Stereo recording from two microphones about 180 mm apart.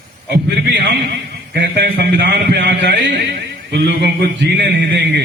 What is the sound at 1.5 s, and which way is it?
A man's voice, 65° right (ahead or behind).